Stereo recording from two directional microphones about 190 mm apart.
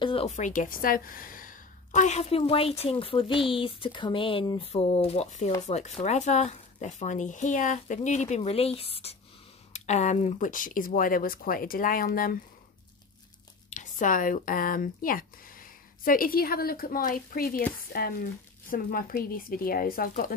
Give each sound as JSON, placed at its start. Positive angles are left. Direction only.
{"t": 0.0, "sound": "a woman's voice", "side_deg": 30}
{"t": 13.7, "sound": "speech", "side_deg": 40}